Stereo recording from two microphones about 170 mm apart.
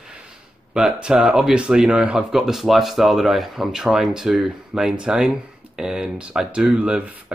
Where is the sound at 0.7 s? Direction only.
5° right (ahead or behind).